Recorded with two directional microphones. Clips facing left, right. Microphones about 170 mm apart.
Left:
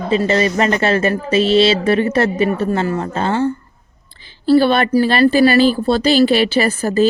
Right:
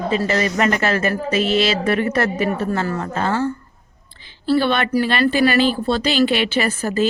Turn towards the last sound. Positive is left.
turn(degrees=35)  # may be behind; listen again after turning